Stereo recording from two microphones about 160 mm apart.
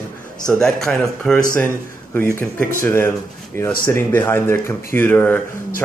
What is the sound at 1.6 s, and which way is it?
A man's voice, 15° left (ahead or behind).